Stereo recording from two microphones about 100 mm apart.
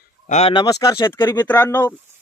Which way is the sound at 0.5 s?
40° left (ahead or behind).